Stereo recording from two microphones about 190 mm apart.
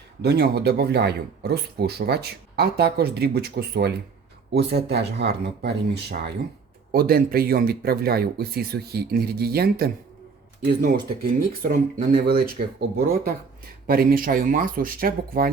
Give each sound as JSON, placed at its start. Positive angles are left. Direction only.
{"t": 0.2, "sound": "speech", "side_deg": -60}